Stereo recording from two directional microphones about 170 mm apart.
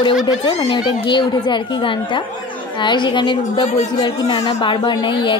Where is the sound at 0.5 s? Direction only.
30° left (ahead or behind).